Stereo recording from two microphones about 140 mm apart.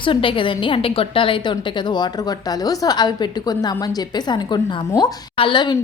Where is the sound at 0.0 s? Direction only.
35° left (ahead or behind).